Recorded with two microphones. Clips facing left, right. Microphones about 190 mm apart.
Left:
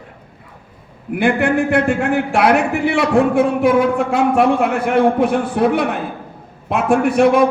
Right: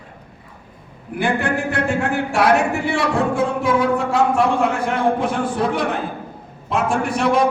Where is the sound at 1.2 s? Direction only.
55° left (ahead or behind).